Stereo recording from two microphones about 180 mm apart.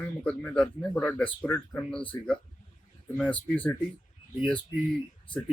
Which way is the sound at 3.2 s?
10° left (ahead or behind).